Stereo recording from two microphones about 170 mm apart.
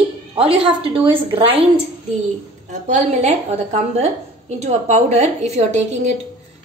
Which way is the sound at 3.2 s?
40° right (ahead or behind).